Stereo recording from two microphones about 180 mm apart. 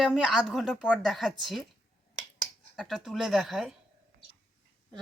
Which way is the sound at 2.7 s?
Centre (ahead or behind).